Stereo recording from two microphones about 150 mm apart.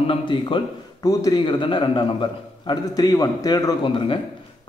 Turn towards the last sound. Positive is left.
turn(degrees=35)  # may be behind; listen again after turning